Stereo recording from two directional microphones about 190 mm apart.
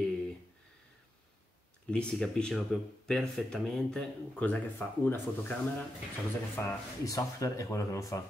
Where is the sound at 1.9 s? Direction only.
5° left (ahead or behind).